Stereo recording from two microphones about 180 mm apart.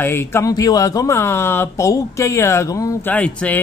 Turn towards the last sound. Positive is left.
turn(degrees=10)  # may be behind; listen again after turning